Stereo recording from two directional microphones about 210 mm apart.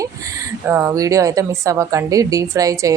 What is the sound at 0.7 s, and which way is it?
A woman's voice, 15° right (ahead or behind).